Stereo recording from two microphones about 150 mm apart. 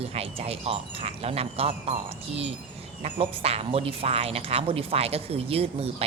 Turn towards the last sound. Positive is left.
turn(degrees=-40)  # may be behind; listen again after turning